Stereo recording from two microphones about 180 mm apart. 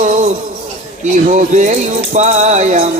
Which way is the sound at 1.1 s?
40° right (ahead or behind).